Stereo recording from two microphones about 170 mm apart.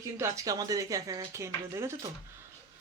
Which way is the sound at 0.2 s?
20° right (ahead or behind).